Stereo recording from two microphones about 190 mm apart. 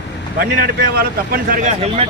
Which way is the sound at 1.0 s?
50° right (ahead or behind).